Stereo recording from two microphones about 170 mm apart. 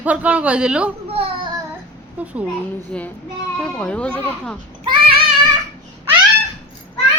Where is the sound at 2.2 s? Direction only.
10° right (ahead or behind).